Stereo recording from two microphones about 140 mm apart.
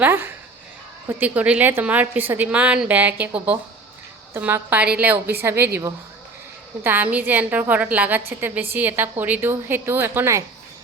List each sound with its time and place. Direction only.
0.0 s a woman's voice: 15° right (ahead or behind)